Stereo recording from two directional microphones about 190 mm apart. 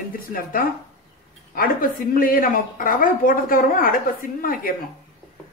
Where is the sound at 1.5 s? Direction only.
45° left (ahead or behind).